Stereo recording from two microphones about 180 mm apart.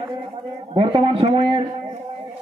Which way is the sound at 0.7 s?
30° right (ahead or behind).